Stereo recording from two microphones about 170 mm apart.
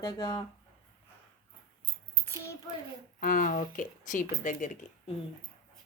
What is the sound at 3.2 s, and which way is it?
Speech, 50° left (ahead or behind).